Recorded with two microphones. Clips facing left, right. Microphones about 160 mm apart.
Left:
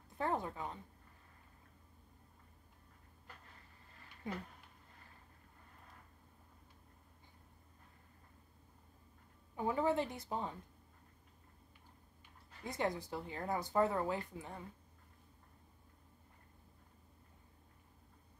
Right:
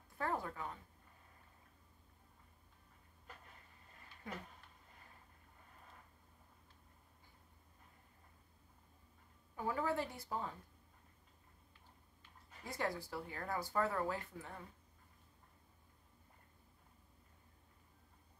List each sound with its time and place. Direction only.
0.2 s speech: 20° left (ahead or behind)
9.6 s speech: 20° left (ahead or behind)
12.6 s speech: 20° left (ahead or behind)